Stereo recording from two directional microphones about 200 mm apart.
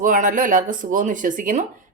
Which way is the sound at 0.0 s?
40° right (ahead or behind).